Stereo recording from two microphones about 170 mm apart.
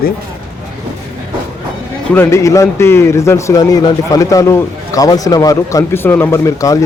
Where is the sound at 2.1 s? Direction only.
15° left (ahead or behind).